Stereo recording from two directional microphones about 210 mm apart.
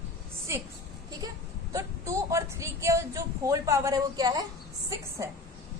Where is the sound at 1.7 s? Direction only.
15° right (ahead or behind).